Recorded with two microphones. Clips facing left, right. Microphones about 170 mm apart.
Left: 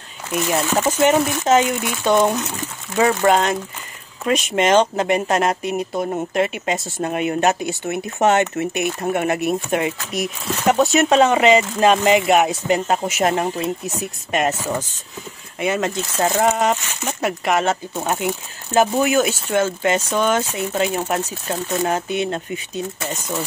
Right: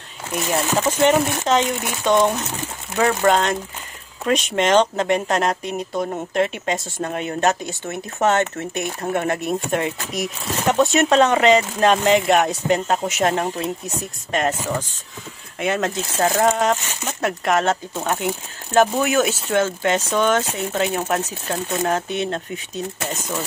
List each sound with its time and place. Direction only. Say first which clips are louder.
1.0 s speech: left 1 dB; 10° left (ahead or behind)